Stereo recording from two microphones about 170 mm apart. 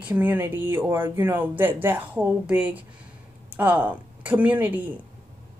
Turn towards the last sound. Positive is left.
turn(degrees=-10)  # may be behind; listen again after turning